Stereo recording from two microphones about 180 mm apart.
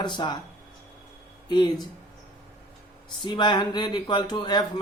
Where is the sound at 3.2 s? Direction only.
25° left (ahead or behind).